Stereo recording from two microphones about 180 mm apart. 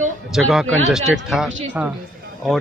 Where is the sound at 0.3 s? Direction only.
Centre (ahead or behind).